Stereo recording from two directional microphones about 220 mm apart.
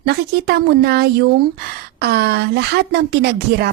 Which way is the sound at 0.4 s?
45° right (ahead or behind).